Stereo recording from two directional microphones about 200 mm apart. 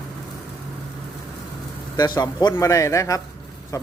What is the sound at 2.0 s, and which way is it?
A man's voice, 20° left (ahead or behind).